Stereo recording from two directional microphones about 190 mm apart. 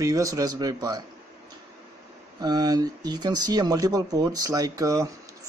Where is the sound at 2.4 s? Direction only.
20° right (ahead or behind).